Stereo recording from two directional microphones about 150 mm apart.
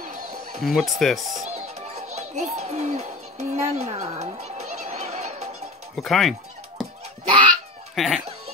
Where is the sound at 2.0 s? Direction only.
50° right (ahead or behind).